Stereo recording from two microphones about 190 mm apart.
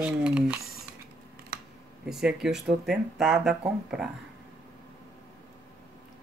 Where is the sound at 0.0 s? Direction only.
5° right (ahead or behind).